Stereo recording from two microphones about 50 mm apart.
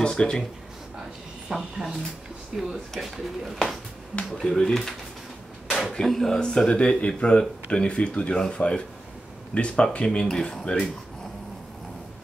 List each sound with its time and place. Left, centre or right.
0.0 s speech: centre
1.5 s speech: centre
4.4 s speech: centre
5.9 s speech: centre